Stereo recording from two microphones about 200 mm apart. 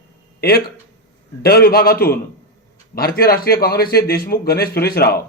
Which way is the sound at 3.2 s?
50° left (ahead or behind).